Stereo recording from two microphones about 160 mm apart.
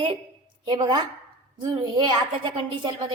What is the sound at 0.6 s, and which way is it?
A woman's voice, 25° right (ahead or behind).